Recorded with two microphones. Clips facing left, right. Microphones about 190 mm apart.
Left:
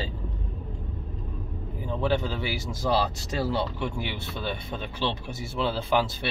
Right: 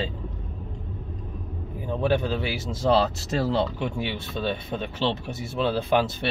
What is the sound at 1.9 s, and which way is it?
Speech, 15° right (ahead or behind).